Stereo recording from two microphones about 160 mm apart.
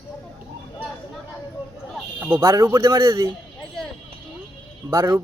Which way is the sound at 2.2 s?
20° right (ahead or behind).